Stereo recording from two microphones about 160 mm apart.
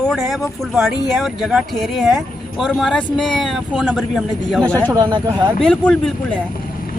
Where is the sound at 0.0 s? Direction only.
Centre (ahead or behind).